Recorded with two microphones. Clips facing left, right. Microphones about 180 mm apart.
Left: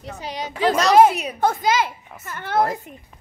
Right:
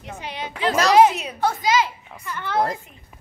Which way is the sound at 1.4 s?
50° left (ahead or behind).